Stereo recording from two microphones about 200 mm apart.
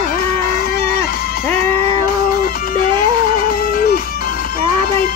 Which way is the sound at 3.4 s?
45° left (ahead or behind).